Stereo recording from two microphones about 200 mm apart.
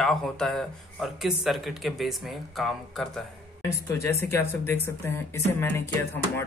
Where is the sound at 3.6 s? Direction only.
15° left (ahead or behind).